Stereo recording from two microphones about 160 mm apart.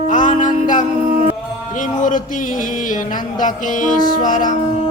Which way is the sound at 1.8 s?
55° left (ahead or behind).